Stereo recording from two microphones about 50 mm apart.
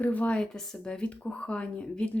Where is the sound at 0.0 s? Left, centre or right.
Left.